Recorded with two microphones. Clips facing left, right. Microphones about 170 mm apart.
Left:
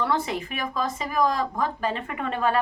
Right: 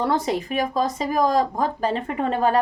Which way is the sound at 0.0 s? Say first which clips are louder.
Right 4 dB; 40° right (ahead or behind).